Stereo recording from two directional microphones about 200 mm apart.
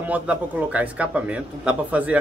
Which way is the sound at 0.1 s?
5° right (ahead or behind).